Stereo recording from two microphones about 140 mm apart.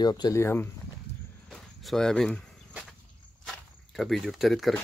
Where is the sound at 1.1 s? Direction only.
50° left (ahead or behind).